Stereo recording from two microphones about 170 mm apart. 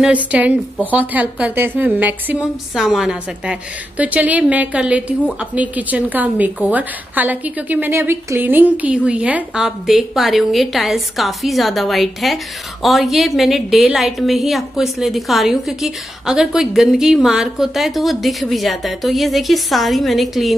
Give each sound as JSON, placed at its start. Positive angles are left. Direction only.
{"t": 0.0, "sound": "a woman's voice", "side_deg": -10}